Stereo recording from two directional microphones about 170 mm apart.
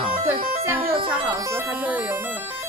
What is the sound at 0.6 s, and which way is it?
Speech, 10° right (ahead or behind).